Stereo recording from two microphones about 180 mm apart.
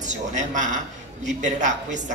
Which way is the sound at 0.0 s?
45° right (ahead or behind).